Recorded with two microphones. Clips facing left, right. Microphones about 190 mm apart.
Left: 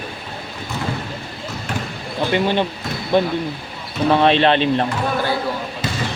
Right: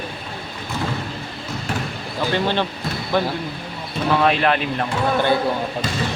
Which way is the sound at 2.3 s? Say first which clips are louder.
Left 3 dB; 15° left (ahead or behind).